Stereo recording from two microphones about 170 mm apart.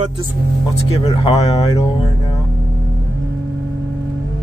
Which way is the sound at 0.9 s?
35° left (ahead or behind).